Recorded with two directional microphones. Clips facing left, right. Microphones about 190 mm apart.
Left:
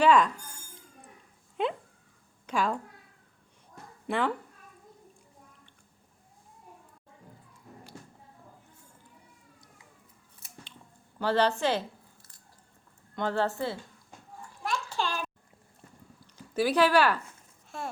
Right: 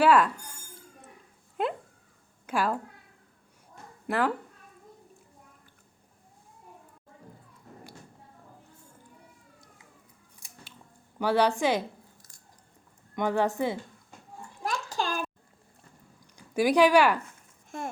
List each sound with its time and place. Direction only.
0.0 s a woman's voice: 5° right (ahead or behind)
1.6 s dog: 5° right (ahead or behind)
2.5 s a woman's voice: 5° right (ahead or behind)
4.0 s speech: 5° right (ahead or behind)
10.4 s scissors: 5° right (ahead or behind)
11.2 s a woman's voice: 10° right (ahead or behind)
13.1 s a woman's voice: 15° right (ahead or behind)
14.6 s a sound: 40° right (ahead or behind)
16.3 s speech: 15° right (ahead or behind)